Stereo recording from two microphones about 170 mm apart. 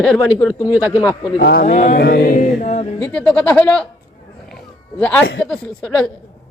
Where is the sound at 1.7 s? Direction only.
50° left (ahead or behind).